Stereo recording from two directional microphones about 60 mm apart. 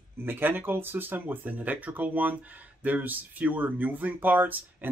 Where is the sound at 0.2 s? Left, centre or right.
Right.